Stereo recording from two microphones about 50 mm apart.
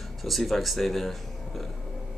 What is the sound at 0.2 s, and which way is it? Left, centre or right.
Speech, centre.